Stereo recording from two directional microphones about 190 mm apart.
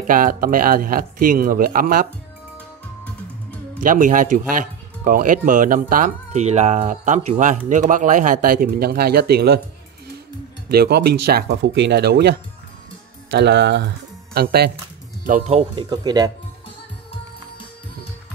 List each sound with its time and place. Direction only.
0.0 s speech: 45° right (ahead or behind)
3.8 s speech: 45° right (ahead or behind)
10.7 s speech: 60° right (ahead or behind)
15.2 s speech: 40° right (ahead or behind)
15.7 s speech: 25° right (ahead or behind)